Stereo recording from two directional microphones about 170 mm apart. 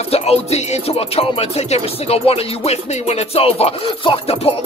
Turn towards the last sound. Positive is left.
turn(degrees=35)  # may be behind; listen again after turning